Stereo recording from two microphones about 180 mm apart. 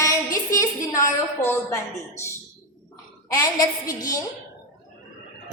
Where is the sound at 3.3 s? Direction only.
20° left (ahead or behind).